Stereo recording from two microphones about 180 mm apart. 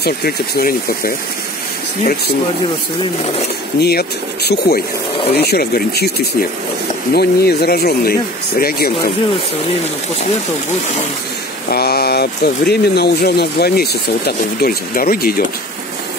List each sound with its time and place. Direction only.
0.0 s speech: 55° left (ahead or behind)
3.8 s speech: 65° left (ahead or behind)
7.2 s speech: 60° left (ahead or behind)
11.7 s speech: 60° left (ahead or behind)